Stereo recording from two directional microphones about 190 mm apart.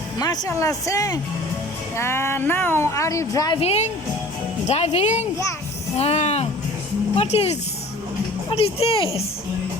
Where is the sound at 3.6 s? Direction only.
35° left (ahead or behind).